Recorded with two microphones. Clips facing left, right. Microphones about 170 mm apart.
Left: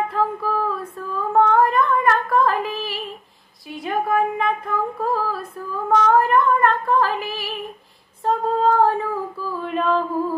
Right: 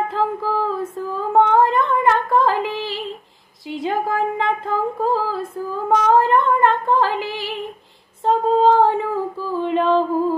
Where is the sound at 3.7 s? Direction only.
25° right (ahead or behind).